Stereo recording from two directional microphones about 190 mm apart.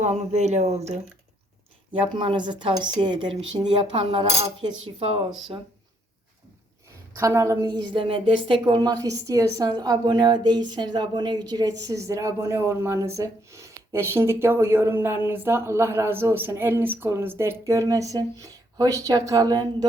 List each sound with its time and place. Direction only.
0.0 s speech: 35° right (ahead or behind)
2.1 s a woman's voice: 25° right (ahead or behind)
7.2 s a woman's voice: 15° right (ahead or behind)